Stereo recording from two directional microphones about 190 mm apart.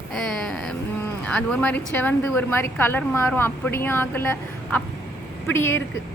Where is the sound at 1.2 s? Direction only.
5° left (ahead or behind).